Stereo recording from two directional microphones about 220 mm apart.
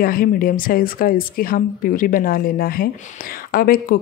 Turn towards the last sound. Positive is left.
turn(degrees=40)  # may be behind; listen again after turning